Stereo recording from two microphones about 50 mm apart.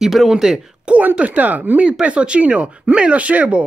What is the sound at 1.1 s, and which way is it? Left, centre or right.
Speech, right.